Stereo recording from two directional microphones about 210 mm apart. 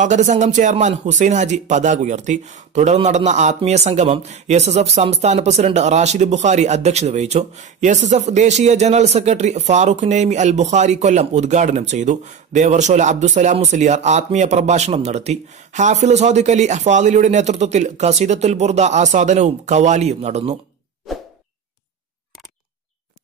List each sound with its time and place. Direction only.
0.0 s speech: 35° right (ahead or behind)